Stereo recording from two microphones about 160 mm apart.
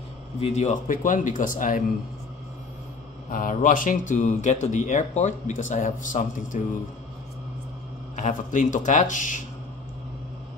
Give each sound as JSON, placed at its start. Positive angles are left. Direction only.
{"t": 0.4, "sound": "speech", "side_deg": 45}
{"t": 3.3, "sound": "speech", "side_deg": 55}
{"t": 8.2, "sound": "speech", "side_deg": 55}